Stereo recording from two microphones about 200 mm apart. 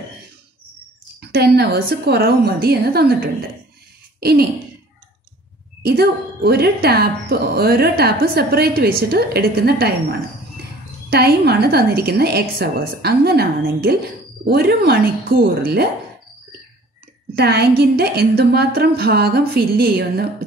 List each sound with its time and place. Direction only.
1.3 s speech: 55° right (ahead or behind)
4.2 s throat clearing: 50° right (ahead or behind)
5.8 s speech: 50° right (ahead or behind)
11.1 s speech: 50° right (ahead or behind)
17.4 s speech: 55° right (ahead or behind)